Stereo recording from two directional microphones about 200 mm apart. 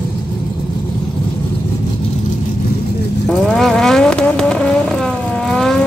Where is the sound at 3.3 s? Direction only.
5° left (ahead or behind).